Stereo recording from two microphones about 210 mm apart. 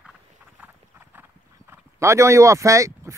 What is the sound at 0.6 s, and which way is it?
Speech, 10° right (ahead or behind).